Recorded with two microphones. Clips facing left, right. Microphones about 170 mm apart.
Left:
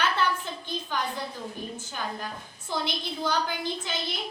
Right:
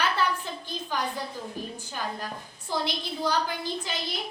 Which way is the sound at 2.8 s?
Centre (ahead or behind).